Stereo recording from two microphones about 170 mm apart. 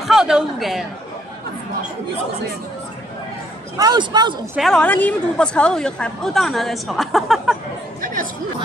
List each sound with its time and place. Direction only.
0.0 s a sound: centre (ahead or behind)
3.7 s a man's voice: 25° right (ahead or behind)
4.6 s a woman's voice: 5° left (ahead or behind)
8.0 s speech: 55° right (ahead or behind)